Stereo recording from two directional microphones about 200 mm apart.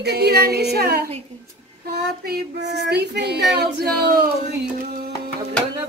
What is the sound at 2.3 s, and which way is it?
Female singing, 55° right (ahead or behind).